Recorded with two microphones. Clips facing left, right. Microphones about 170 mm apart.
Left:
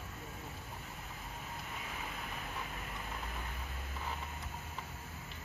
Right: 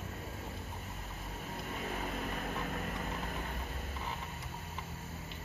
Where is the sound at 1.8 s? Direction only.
50° right (ahead or behind).